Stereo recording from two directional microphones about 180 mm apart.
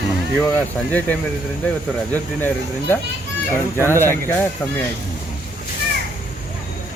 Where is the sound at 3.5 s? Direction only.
15° left (ahead or behind).